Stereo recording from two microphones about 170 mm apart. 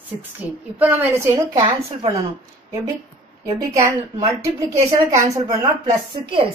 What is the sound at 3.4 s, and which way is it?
A woman's voice, 20° right (ahead or behind).